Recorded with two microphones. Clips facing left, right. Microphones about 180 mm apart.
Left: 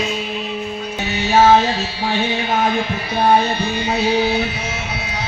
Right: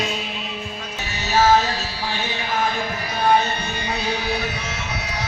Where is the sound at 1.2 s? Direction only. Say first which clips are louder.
Left 4 dB; 25° left (ahead or behind).